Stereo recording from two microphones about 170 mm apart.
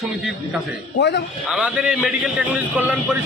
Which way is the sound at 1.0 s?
90° left.